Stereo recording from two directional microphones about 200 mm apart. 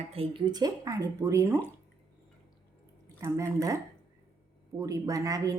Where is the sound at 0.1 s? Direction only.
25° right (ahead or behind).